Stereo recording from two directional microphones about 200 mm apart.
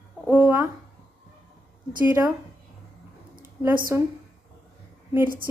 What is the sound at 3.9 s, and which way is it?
Speech, 15° right (ahead or behind).